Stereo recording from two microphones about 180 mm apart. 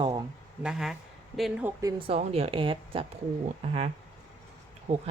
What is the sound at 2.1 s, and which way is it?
Speech, 35° right (ahead or behind).